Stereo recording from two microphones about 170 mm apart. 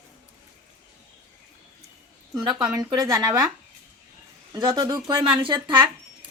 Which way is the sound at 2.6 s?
20° right (ahead or behind).